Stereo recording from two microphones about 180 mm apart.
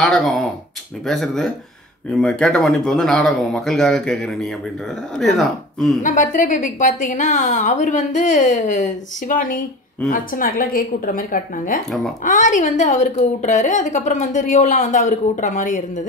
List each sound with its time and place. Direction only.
0.0 s a man's voice: 5° left (ahead or behind)
6.0 s a woman's voice: 45° left (ahead or behind)